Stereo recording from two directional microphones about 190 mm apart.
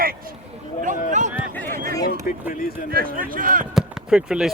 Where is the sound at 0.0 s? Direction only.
50° right (ahead or behind).